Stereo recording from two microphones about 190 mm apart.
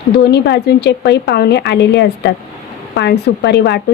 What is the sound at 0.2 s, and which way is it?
A woman's voice, 60° left (ahead or behind).